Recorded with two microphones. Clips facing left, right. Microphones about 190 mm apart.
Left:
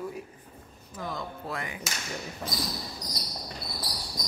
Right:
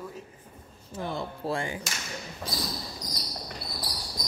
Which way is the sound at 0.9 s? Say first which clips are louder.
Right 3 dB; 30° right (ahead or behind).